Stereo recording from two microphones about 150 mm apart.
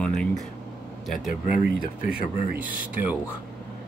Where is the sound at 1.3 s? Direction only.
60° left (ahead or behind).